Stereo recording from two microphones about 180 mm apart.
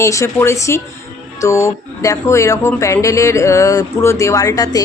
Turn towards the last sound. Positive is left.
turn(degrees=20)  # may be behind; listen again after turning